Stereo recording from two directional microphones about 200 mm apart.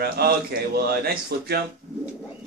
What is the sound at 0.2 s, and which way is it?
A man's voice, 50° right (ahead or behind).